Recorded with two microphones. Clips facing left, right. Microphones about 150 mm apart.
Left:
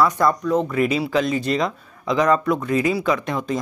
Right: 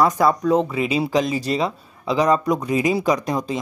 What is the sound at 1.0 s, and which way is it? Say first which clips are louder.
Speech: even; 35° right (ahead or behind).